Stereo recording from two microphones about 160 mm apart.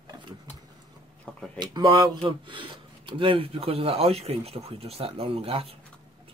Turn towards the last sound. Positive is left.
turn(degrees=-35)  # may be behind; listen again after turning